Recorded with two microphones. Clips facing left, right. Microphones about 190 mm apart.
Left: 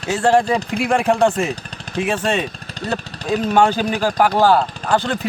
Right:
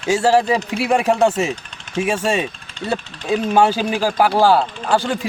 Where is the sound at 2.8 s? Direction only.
35° left (ahead or behind).